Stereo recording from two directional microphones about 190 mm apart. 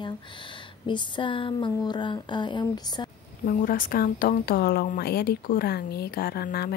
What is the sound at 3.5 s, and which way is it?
A woman's voice, 45° left (ahead or behind).